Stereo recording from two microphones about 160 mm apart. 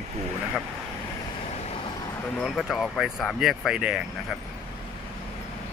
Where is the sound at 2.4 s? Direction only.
Centre (ahead or behind).